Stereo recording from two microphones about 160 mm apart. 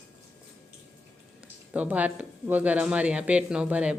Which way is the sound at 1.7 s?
10° right (ahead or behind).